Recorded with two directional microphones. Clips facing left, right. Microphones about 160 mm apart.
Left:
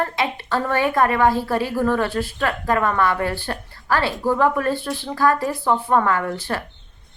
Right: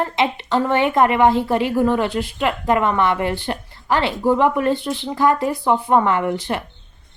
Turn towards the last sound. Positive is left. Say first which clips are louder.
# right 3 dB
turn(degrees=-20)  # may be behind; listen again after turning